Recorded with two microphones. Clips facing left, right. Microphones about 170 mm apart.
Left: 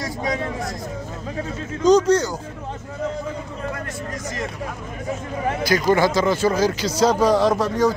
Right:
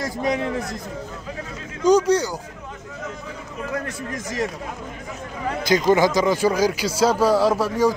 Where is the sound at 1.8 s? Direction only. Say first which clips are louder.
Left 1 dB; 10° right (ahead or behind).